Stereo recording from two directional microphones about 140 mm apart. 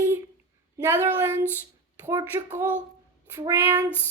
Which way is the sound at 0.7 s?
15° right (ahead or behind).